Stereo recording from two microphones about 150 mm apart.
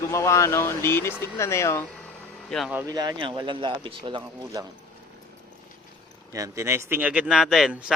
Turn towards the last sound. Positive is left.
turn(degrees=-5)  # may be behind; listen again after turning